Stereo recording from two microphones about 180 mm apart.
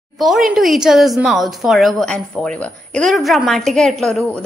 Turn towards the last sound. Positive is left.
turn(degrees=0)  # may be behind; listen again after turning